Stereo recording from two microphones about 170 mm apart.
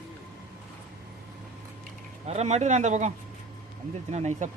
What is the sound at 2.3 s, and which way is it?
Speech, 40° right (ahead or behind).